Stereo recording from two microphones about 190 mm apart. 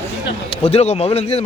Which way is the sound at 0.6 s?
35° left (ahead or behind).